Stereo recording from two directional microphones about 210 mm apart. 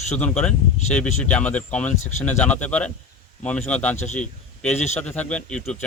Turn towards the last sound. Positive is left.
turn(degrees=5)  # may be behind; listen again after turning